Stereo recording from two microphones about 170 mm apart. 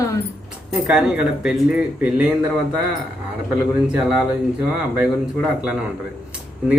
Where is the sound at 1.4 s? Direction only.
5° right (ahead or behind).